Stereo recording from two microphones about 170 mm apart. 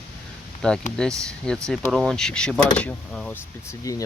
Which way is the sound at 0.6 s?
5° left (ahead or behind).